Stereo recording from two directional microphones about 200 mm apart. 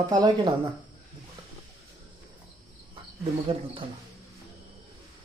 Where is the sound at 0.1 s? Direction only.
20° right (ahead or behind).